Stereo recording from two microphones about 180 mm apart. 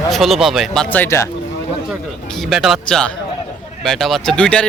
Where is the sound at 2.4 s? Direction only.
Centre (ahead or behind).